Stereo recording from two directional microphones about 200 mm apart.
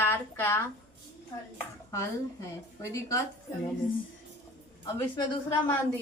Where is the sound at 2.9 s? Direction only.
15° left (ahead or behind).